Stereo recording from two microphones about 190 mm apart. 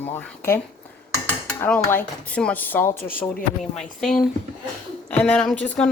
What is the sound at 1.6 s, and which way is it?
A woman's voice, 10° left (ahead or behind).